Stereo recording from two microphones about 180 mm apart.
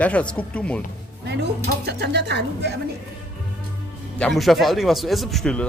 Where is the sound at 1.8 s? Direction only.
70° right (ahead or behind).